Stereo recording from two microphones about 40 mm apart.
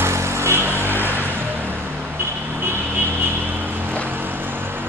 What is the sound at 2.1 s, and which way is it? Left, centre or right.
Vehicle, right.